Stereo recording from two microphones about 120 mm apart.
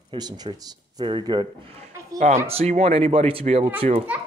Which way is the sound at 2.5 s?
60° right (ahead or behind).